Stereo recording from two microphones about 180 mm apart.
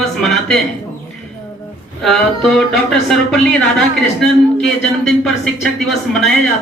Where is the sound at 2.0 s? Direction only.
Centre (ahead or behind).